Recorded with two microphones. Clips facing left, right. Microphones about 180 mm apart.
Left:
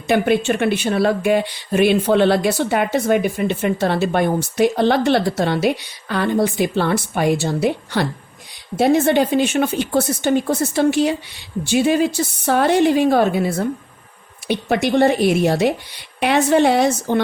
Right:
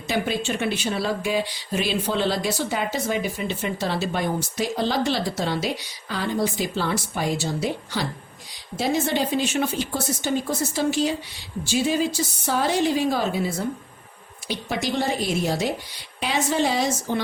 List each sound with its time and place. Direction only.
0.1 s speech: 60° left (ahead or behind)